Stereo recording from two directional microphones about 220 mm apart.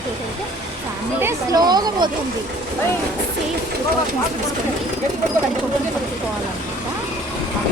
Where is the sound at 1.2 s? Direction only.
15° right (ahead or behind).